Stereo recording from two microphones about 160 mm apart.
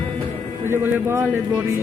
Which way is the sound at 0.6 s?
15° right (ahead or behind).